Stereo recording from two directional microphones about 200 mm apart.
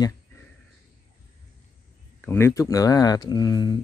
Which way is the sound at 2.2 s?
10° left (ahead or behind).